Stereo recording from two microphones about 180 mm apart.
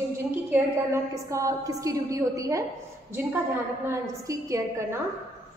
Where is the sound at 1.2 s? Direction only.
20° right (ahead or behind).